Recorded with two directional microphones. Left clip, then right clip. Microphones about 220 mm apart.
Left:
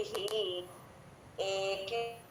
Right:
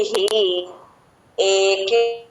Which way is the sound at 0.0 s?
45° right (ahead or behind).